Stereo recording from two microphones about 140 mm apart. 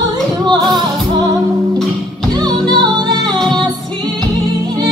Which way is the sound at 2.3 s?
30° right (ahead or behind).